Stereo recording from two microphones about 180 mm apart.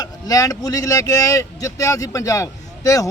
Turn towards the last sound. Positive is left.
turn(degrees=20)  # may be behind; listen again after turning